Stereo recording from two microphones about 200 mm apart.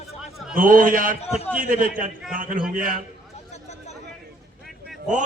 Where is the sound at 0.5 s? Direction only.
45° right (ahead or behind).